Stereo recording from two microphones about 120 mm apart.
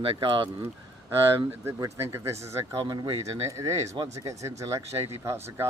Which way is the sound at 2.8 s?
40° right (ahead or behind).